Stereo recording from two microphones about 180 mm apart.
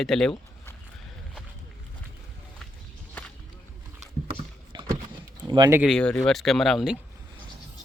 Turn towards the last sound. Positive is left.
turn(degrees=0)  # may be behind; listen again after turning